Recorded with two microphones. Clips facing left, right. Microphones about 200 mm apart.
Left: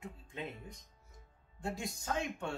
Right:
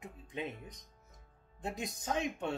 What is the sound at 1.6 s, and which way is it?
Speech, 20° right (ahead or behind).